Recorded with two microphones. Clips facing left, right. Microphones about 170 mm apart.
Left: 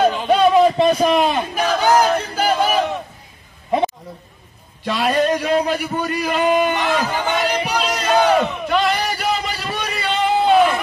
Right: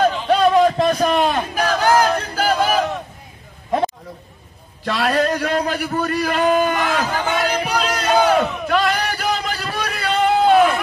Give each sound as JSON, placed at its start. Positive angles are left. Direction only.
{"t": 0.0, "sound": "a sound", "side_deg": 5}
{"t": 4.8, "sound": "a man's voice", "side_deg": 5}
{"t": 7.2, "sound": "battle cry", "side_deg": 0}